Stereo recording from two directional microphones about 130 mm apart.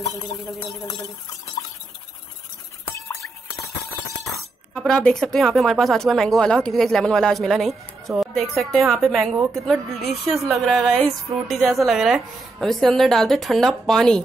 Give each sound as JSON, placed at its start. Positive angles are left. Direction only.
{"t": 2.9, "sound": "music", "side_deg": 25}
{"t": 3.8, "sound": "a sound", "side_deg": 25}
{"t": 4.7, "sound": "speech", "side_deg": 5}